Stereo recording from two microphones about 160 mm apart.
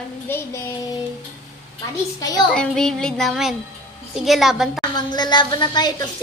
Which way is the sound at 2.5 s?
5° left (ahead or behind).